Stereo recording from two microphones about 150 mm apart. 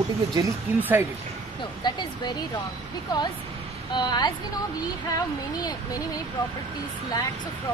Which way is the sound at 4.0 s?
30° left (ahead or behind).